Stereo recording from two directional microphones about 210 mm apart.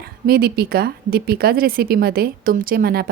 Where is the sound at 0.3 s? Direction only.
45° right (ahead or behind).